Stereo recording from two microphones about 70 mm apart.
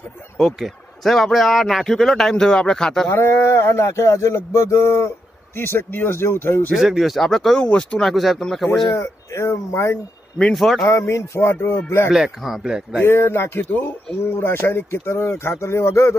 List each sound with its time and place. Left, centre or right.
1.0 s a man's voice: centre
3.1 s a sound: left
5.6 s speech: left
6.7 s a man's voice: centre
8.0 s a man's voice: centre
8.9 s a sound: left
10.5 s a man's voice: centre
10.9 s speech: left
12.1 s a man's voice: centre
13.0 s speech: left